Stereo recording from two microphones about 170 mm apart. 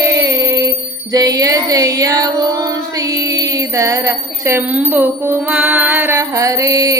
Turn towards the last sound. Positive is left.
turn(degrees=-20)  # may be behind; listen again after turning